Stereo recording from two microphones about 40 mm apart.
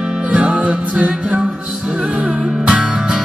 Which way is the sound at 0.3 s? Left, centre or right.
Right.